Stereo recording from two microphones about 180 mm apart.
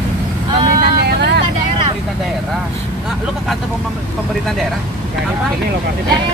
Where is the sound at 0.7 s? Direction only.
65° right (ahead or behind).